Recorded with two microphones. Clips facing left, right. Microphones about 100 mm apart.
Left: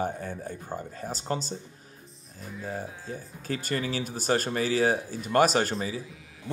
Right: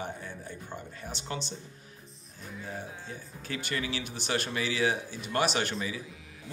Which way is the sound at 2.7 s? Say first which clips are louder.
Left 5 dB; 40° left (ahead or behind).